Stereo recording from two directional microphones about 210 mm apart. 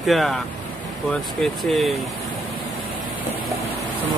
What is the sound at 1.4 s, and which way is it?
Speech, centre (ahead or behind).